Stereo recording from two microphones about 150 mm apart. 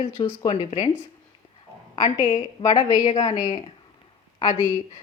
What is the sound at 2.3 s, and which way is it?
Speech, 25° left (ahead or behind).